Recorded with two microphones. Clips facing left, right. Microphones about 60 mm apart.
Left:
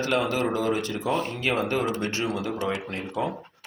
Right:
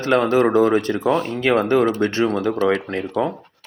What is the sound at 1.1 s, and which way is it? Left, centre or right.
Speech, right.